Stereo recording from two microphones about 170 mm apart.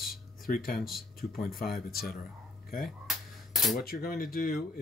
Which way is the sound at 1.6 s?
60° left (ahead or behind).